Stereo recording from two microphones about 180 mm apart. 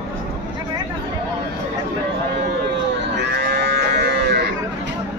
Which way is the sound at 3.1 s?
65° right (ahead or behind).